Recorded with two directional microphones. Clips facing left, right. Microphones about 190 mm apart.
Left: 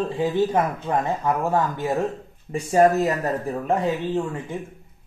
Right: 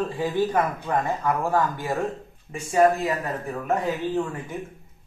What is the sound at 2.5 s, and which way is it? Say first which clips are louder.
Speech: left 2 dB; 40° left (ahead or behind).